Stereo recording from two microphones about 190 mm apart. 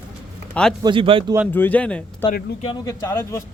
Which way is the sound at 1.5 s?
10° left (ahead or behind).